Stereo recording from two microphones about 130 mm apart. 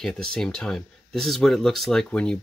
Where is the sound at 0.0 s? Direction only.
5° left (ahead or behind).